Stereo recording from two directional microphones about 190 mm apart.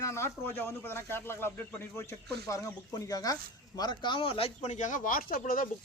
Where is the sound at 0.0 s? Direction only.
15° left (ahead or behind).